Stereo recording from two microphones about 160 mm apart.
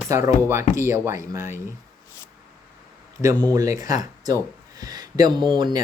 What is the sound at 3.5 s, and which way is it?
Speech, 20° right (ahead or behind).